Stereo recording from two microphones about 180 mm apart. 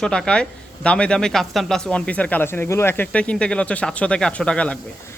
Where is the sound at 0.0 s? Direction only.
5° left (ahead or behind).